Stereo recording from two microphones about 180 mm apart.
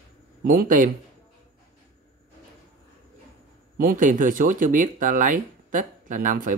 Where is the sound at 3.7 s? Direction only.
50° right (ahead or behind).